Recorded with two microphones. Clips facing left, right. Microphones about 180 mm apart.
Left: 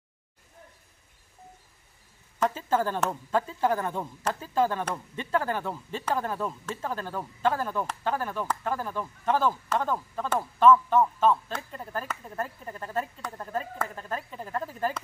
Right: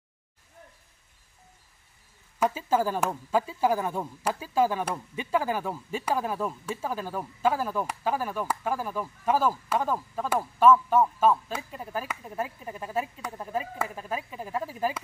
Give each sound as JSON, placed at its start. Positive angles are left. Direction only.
{"t": 2.4, "sound": "speech", "side_deg": -10}